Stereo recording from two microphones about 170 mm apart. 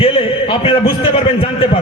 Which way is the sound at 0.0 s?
30° left (ahead or behind).